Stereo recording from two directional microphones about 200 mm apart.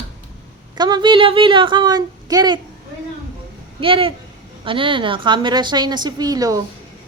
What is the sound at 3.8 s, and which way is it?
A woman's voice, 25° right (ahead or behind).